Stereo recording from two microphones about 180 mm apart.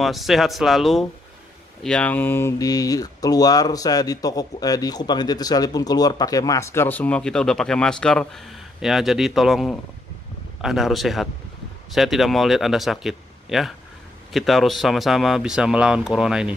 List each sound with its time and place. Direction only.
0.0 s speech: centre (ahead or behind)